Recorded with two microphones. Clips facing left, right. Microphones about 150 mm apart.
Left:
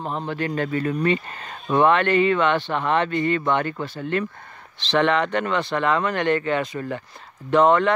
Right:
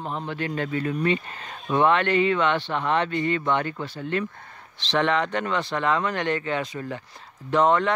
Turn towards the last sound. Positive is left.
turn(degrees=60)  # may be behind; listen again after turning